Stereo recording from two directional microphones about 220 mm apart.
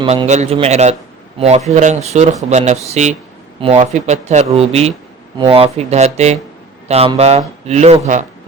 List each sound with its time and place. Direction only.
0.0 s speech: 25° right (ahead or behind)